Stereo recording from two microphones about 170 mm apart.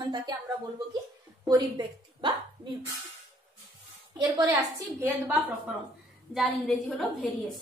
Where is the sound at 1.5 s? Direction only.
30° right (ahead or behind).